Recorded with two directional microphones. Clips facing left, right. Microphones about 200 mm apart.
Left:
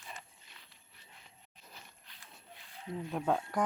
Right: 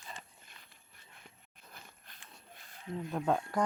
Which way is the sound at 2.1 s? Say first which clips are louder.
Even; 45° right (ahead or behind).